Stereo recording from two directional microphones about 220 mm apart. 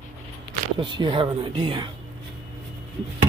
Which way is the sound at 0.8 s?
20° right (ahead or behind).